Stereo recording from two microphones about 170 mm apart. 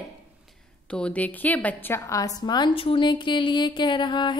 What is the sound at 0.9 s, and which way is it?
A woman's voice, 5° left (ahead or behind).